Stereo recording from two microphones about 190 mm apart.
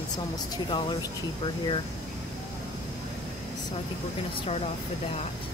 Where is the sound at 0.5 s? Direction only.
20° left (ahead or behind).